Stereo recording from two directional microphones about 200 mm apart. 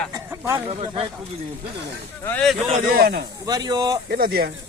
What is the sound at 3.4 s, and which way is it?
Speech, 20° right (ahead or behind).